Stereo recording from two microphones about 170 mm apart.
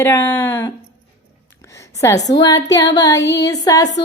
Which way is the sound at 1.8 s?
15° left (ahead or behind).